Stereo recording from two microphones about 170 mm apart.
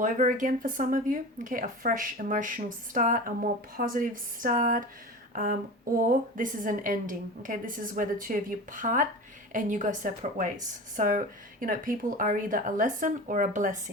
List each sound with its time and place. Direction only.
0.0 s speech: 50° right (ahead or behind)
5.3 s a sound: 55° right (ahead or behind)
6.1 s speech: 50° right (ahead or behind)